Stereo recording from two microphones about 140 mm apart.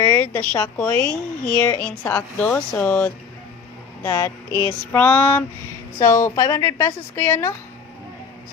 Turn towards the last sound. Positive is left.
turn(degrees=15)  # may be behind; listen again after turning